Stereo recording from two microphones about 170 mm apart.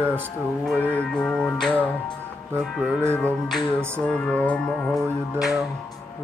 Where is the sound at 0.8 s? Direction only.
10° left (ahead or behind).